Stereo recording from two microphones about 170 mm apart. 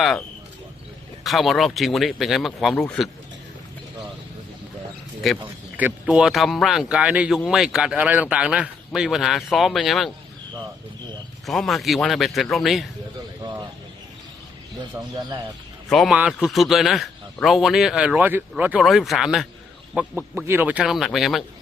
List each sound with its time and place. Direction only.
1.2 s speech: centre (ahead or behind)
5.7 s speech: 10° right (ahead or behind)
11.4 s speech: centre (ahead or behind)
15.0 s speech: 15° right (ahead or behind)
15.9 s speech: centre (ahead or behind)
20.0 s speech: 10° right (ahead or behind)